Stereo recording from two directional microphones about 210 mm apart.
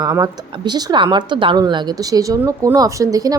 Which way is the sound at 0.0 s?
20° right (ahead or behind).